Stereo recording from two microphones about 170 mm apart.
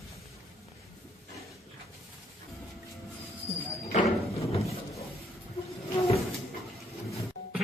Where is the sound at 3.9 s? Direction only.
35° left (ahead or behind).